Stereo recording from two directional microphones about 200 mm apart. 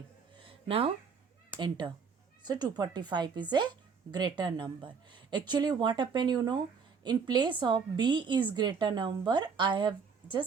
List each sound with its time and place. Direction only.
1.5 s a woman's voice: 20° right (ahead or behind)